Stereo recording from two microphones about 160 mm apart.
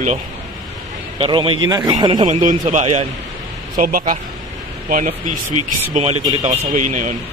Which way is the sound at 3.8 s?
60° right (ahead or behind).